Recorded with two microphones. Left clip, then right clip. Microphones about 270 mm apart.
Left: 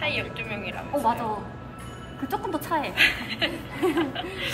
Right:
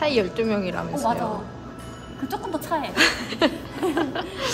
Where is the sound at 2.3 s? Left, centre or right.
Centre.